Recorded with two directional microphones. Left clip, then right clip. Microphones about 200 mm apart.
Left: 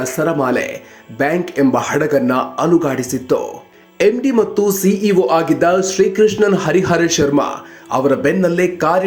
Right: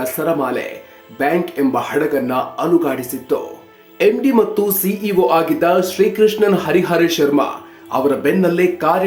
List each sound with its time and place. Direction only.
0.0 s speech: 20° left (ahead or behind)